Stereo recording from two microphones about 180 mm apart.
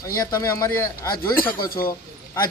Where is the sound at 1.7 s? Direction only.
55° left (ahead or behind).